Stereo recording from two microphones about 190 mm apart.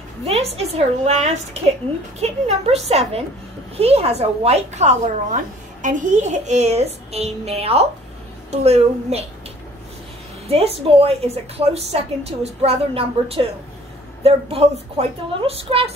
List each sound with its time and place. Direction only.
0.2 s a woman's voice: 35° right (ahead or behind)
10.5 s a woman's voice: 30° right (ahead or behind)